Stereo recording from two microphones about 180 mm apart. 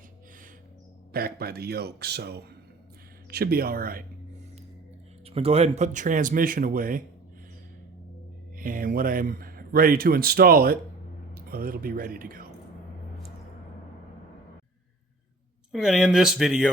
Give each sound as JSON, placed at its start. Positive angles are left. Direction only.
{"t": 1.1, "sound": "a man's voice", "side_deg": -60}
{"t": 5.2, "sound": "speech", "side_deg": -35}
{"t": 8.5, "sound": "speech", "side_deg": -50}
{"t": 15.7, "sound": "speech", "side_deg": -5}